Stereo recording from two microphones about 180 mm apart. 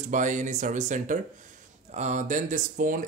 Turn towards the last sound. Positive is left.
turn(degrees=-45)  # may be behind; listen again after turning